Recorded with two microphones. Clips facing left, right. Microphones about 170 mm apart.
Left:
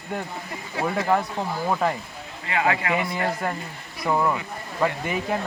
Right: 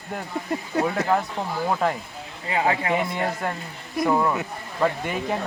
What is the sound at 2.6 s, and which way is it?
Speech, 25° right (ahead or behind).